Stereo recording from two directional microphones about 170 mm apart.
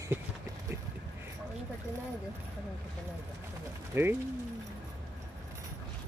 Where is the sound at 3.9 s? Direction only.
15° right (ahead or behind).